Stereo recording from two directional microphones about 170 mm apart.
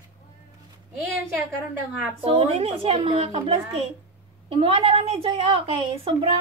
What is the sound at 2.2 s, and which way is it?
A woman's voice, 35° right (ahead or behind).